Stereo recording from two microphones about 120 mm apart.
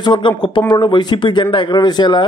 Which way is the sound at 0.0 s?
40° left (ahead or behind).